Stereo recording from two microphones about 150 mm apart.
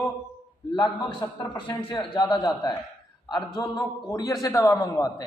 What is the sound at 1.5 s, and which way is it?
A man's voice, 35° left (ahead or behind).